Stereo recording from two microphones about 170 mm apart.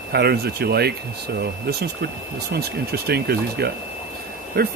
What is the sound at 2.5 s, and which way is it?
Speech, 65° right (ahead or behind).